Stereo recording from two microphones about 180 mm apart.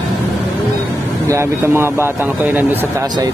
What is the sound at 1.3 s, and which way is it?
Speech, 15° right (ahead or behind).